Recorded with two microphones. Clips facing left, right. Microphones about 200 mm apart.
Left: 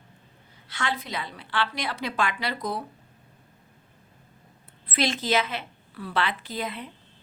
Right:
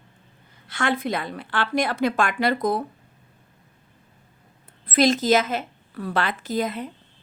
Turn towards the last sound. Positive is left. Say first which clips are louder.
# right 7 dB
turn(degrees=-45)  # may be behind; listen again after turning